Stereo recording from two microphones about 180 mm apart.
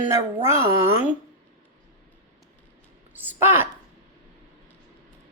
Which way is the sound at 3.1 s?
10° right (ahead or behind).